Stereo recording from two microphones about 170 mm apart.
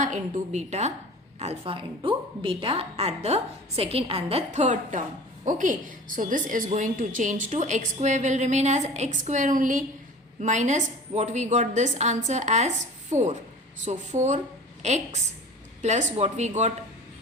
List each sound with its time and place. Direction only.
0.0 s a woman's voice: 45° right (ahead or behind)